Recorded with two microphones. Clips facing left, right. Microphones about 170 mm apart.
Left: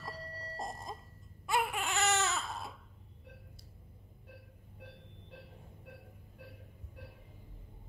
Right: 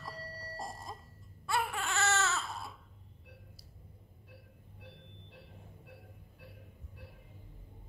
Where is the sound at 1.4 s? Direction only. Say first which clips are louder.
Left 1 dB; 15° left (ahead or behind).